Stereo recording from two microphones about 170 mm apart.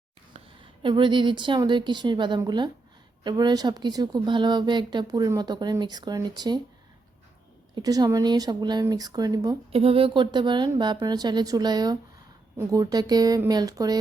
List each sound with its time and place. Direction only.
0.3 s a woman's voice: 30° right (ahead or behind)
7.8 s speech: 20° right (ahead or behind)
9.7 s speech: 35° right (ahead or behind)